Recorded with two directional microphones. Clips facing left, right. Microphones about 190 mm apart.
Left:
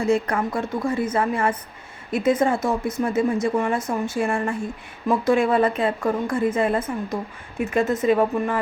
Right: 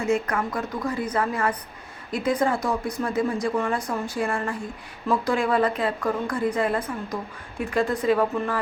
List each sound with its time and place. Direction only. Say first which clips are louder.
0.0 s a woman's voice: left 3 dB; 30° left (ahead or behind)